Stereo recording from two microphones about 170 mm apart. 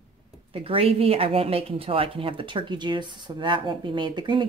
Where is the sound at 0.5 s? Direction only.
35° right (ahead or behind).